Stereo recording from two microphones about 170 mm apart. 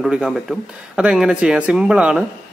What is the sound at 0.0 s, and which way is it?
A man's voice, centre (ahead or behind).